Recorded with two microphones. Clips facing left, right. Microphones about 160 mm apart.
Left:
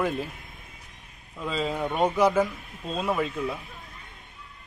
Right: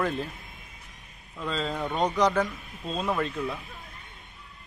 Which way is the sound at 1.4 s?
10° left (ahead or behind).